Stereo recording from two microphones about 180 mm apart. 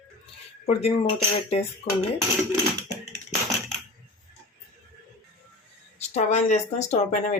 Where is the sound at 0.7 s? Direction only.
35° left (ahead or behind).